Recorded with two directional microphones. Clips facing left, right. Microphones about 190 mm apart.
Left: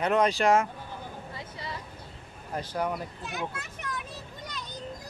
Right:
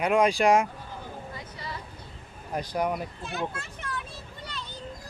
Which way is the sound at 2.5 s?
15° right (ahead or behind).